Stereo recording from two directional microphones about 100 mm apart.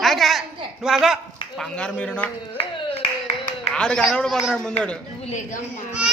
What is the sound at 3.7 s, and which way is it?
Speech, 10° left (ahead or behind).